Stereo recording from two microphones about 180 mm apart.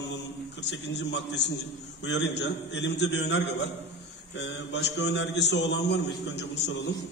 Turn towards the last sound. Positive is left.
turn(degrees=70)  # may be behind; listen again after turning